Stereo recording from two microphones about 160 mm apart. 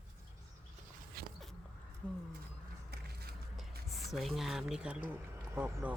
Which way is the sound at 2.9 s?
80° right.